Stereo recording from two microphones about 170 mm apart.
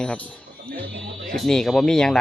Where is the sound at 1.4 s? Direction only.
5° left (ahead or behind).